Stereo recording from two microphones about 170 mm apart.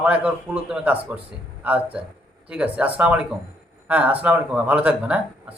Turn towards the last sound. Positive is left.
turn(degrees=-10)  # may be behind; listen again after turning